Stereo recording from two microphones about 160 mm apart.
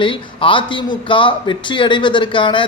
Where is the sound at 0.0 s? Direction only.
30° left (ahead or behind).